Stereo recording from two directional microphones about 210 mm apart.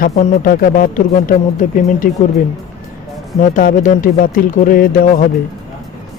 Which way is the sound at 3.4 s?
40° left (ahead or behind).